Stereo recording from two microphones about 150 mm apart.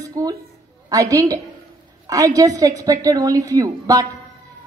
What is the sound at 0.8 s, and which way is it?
A woman's voice, 20° right (ahead or behind).